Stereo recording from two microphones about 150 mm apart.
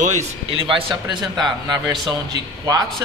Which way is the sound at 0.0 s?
50° right (ahead or behind).